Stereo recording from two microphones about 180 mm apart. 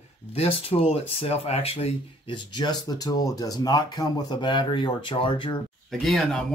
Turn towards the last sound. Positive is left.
turn(degrees=0)  # may be behind; listen again after turning